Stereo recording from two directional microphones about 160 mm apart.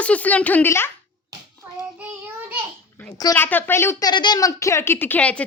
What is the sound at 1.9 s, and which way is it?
Child singing, 10° right (ahead or behind).